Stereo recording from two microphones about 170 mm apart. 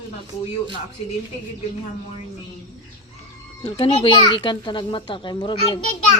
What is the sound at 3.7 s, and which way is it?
A child's voice, 30° left (ahead or behind).